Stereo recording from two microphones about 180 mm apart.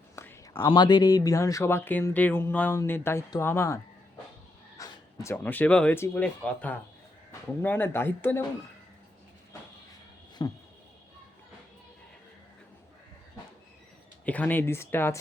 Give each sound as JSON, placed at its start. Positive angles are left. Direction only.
{"t": 0.2, "sound": "speech", "side_deg": 15}
{"t": 4.8, "sound": "speech", "side_deg": 15}
{"t": 10.4, "sound": "a sound", "side_deg": 25}
{"t": 14.3, "sound": "speech", "side_deg": 10}